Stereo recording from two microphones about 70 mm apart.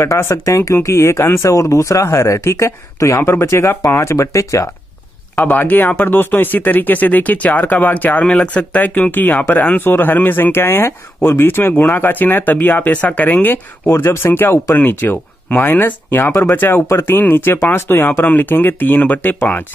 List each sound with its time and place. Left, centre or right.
0.2 s speech: left
1.5 s speech: left
5.3 s speech: left
13.9 s speech: left